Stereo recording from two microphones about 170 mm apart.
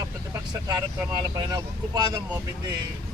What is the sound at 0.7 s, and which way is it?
Speech, 25° right (ahead or behind).